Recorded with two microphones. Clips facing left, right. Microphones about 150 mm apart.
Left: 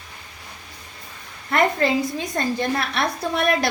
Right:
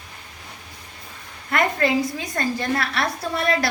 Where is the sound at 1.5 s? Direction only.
25° left (ahead or behind).